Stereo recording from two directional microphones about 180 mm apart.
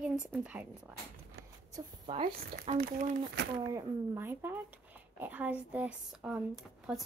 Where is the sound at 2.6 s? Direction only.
40° right (ahead or behind).